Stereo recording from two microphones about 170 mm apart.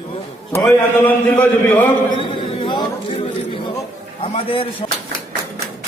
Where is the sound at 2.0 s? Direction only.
30° left (ahead or behind).